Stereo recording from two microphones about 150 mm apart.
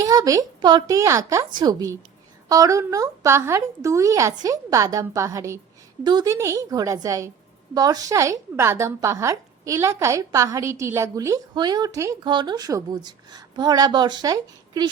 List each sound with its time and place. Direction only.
0.0 s speech: 25° right (ahead or behind)